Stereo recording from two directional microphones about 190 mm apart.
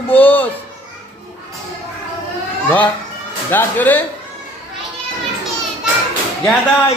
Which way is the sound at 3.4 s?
10° left (ahead or behind).